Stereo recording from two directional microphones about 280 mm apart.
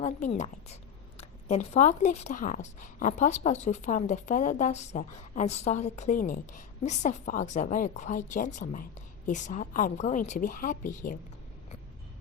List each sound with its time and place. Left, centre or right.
0.0 s speech: left